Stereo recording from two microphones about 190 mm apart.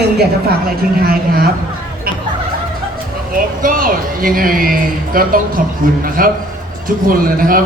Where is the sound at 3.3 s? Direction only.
45° right (ahead or behind).